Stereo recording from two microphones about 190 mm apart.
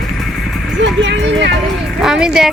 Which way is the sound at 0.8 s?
70° right (ahead or behind).